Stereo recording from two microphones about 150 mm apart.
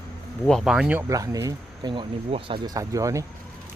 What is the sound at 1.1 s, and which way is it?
Speech, 20° right (ahead or behind).